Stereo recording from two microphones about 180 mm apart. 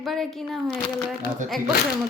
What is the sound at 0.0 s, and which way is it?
A woman's voice, centre (ahead or behind).